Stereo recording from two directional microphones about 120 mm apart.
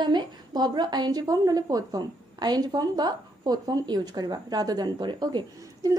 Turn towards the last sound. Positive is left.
turn(degrees=-35)  # may be behind; listen again after turning